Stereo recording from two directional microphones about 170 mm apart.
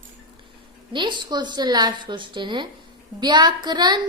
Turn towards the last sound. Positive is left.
turn(degrees=-25)  # may be behind; listen again after turning